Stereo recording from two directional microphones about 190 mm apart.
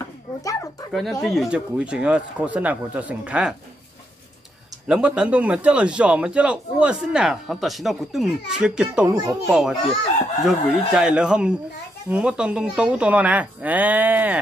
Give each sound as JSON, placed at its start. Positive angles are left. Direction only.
{"t": 0.4, "sound": "speech", "side_deg": 20}
{"t": 1.2, "sound": "a man's voice", "side_deg": 0}
{"t": 4.8, "sound": "a man's voice", "side_deg": -5}
{"t": 9.1, "sound": "a child's voice", "side_deg": -20}
{"t": 9.5, "sound": "a man's voice", "side_deg": 0}